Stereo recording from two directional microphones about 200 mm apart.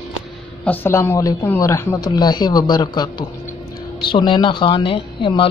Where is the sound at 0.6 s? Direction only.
10° left (ahead or behind).